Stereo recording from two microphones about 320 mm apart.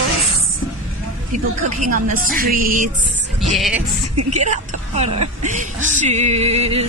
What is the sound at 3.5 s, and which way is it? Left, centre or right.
Speech, centre.